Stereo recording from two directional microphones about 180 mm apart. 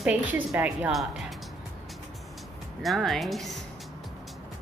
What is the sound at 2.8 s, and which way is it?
Speech, centre (ahead or behind).